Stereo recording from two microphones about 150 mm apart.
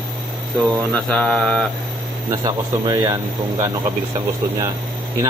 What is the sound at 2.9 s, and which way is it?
Speech, 20° right (ahead or behind).